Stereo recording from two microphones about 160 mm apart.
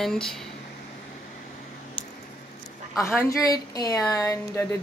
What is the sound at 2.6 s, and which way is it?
A woman's voice, 20° left (ahead or behind).